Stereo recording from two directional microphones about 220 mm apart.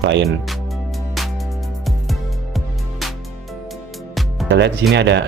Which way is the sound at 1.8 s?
Centre (ahead or behind).